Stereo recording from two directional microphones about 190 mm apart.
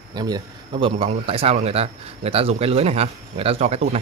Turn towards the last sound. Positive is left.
turn(degrees=-35)  # may be behind; listen again after turning